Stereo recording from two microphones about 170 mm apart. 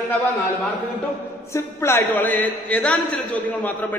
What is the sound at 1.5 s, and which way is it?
A man's voice, 15° left (ahead or behind).